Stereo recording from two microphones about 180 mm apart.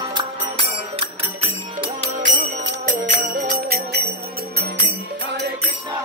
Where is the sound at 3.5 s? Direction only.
55° right (ahead or behind).